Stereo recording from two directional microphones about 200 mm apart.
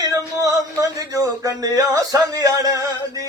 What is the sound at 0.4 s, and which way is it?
Speech, 15° right (ahead or behind).